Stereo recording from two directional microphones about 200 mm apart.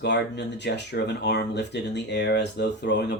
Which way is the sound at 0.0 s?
60° left (ahead or behind).